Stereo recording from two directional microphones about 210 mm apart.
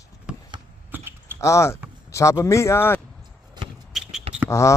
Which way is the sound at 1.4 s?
15° left (ahead or behind).